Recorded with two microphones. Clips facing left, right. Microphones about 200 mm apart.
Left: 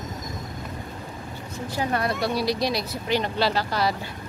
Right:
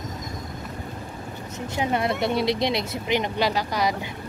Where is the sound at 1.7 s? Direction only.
20° right (ahead or behind).